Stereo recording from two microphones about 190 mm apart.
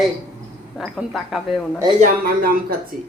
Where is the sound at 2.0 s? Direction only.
50° right (ahead or behind).